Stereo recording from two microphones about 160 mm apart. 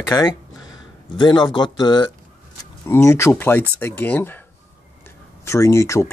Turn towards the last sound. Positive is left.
turn(degrees=20)  # may be behind; listen again after turning